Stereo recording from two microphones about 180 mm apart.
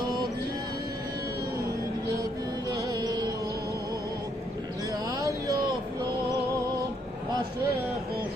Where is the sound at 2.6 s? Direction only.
20° right (ahead or behind).